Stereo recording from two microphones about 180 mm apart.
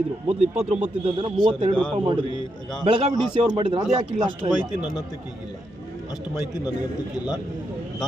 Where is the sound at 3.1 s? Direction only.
25° right (ahead or behind).